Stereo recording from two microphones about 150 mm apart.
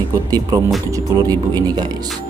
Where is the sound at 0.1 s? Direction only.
25° right (ahead or behind).